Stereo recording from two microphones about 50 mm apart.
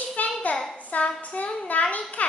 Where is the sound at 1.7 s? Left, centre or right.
Left.